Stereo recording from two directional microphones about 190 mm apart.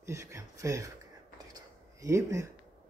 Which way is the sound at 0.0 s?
15° right (ahead or behind).